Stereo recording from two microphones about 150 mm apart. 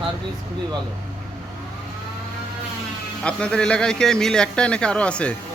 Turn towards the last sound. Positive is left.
turn(degrees=5)  # may be behind; listen again after turning